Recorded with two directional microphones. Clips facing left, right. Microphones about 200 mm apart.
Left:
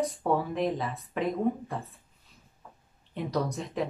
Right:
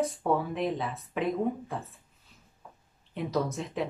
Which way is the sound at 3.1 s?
Centre (ahead or behind).